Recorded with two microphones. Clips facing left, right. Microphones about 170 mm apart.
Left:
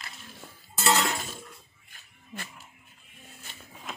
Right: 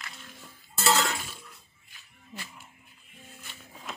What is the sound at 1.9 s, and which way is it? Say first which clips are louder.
Livestock: left 2 dB; 50° left (ahead or behind).